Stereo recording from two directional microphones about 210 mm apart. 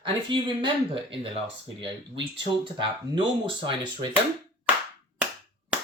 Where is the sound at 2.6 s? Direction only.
25° right (ahead or behind).